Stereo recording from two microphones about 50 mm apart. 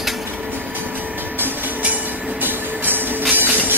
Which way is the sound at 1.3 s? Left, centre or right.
Right.